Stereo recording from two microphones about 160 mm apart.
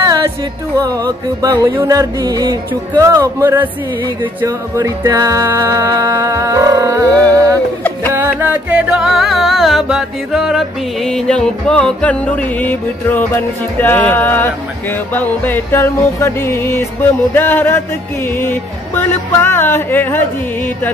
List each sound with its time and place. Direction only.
0.7 s music: 20° right (ahead or behind); by 20.2 s 10° left (ahead or behind)